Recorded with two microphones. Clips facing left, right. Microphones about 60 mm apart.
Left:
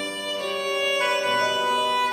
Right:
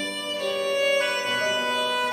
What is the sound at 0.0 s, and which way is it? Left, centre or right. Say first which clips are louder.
Music: even; centre.